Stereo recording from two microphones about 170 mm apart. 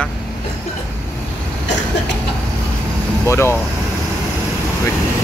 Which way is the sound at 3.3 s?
15° left (ahead or behind).